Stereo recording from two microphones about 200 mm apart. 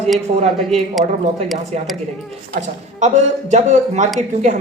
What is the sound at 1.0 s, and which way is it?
Speech, 25° right (ahead or behind).